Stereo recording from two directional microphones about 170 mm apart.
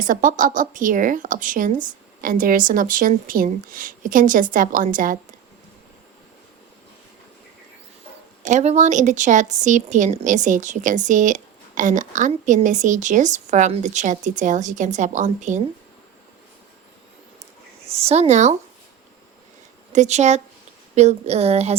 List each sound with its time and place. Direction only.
0.0 s speech: 50° right (ahead or behind)
8.4 s speech: 45° right (ahead or behind)
17.9 s speech: 40° right (ahead or behind)
19.9 s speech: 45° right (ahead or behind)